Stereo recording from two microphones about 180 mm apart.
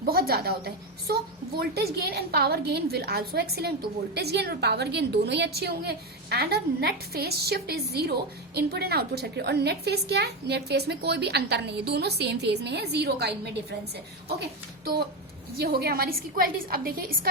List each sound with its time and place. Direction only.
0.0 s a woman's voice: 55° right (ahead or behind)
15.5 s a woman's voice: 60° right (ahead or behind)